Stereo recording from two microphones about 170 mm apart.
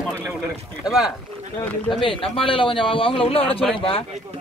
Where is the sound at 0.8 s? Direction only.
Centre (ahead or behind).